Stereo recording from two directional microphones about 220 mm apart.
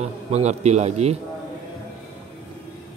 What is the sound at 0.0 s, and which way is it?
Speech, 30° right (ahead or behind).